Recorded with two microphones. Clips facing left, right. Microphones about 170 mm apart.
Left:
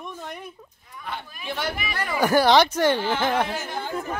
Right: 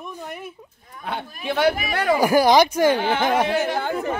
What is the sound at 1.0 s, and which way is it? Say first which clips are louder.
Speech: right 6 dB; 65° right (ahead or behind).